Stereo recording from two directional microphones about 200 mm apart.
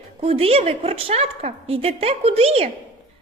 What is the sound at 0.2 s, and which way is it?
A woman's voice, 30° right (ahead or behind).